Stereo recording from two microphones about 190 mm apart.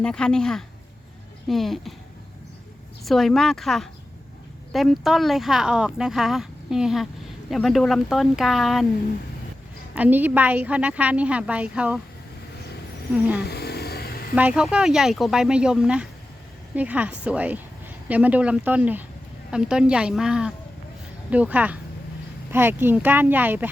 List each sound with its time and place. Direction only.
0.0 s speech: 5° left (ahead or behind)
3.0 s speech: centre (ahead or behind)
9.9 s a woman's voice: 10° right (ahead or behind)
13.4 s a sound: 60° left (ahead or behind)
14.3 s a woman's voice: 5° right (ahead or behind)